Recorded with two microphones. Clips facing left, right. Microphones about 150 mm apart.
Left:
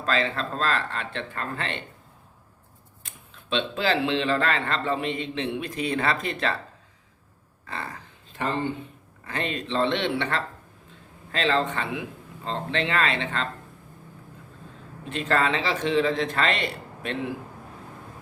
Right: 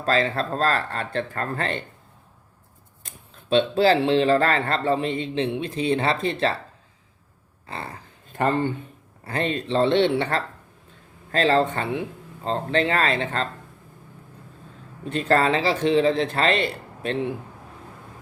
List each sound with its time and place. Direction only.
0.0 s speech: 35° right (ahead or behind)
3.0 s speech: 35° right (ahead or behind)
7.7 s speech: 30° right (ahead or behind)
9.2 s speech: 35° right (ahead or behind)
15.1 s speech: 35° right (ahead or behind)